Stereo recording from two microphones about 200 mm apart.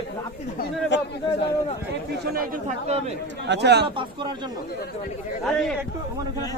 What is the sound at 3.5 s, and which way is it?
Speech, 55° right (ahead or behind).